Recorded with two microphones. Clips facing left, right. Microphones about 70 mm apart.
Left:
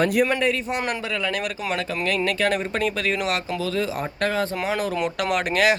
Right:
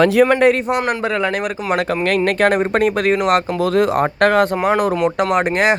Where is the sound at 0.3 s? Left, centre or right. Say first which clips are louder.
Right 9 dB; right.